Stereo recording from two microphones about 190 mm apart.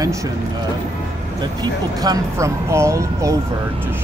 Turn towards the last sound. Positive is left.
turn(degrees=-15)  # may be behind; listen again after turning